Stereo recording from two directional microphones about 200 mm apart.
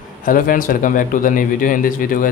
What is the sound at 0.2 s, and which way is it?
A man's voice, 45° left (ahead or behind).